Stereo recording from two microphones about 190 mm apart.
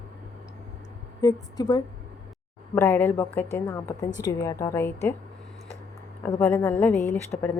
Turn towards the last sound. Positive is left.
turn(degrees=15)  # may be behind; listen again after turning